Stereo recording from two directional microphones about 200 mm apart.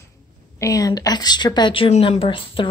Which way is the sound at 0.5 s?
15° left (ahead or behind).